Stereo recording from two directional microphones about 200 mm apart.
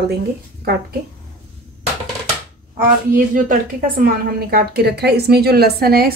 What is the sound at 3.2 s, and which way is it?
A woman's voice, 45° right (ahead or behind).